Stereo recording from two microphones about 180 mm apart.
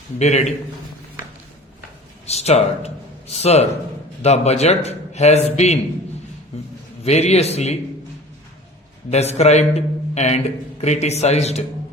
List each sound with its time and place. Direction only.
0.2 s a man's voice: 40° left (ahead or behind)
2.2 s a man's voice: 35° left (ahead or behind)
9.0 s a man's voice: 35° left (ahead or behind)